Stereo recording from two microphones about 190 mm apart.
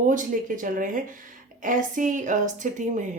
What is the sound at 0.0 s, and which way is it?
A woman's voice, 45° right (ahead or behind).